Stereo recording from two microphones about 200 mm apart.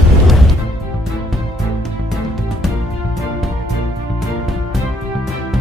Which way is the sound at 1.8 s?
Centre (ahead or behind).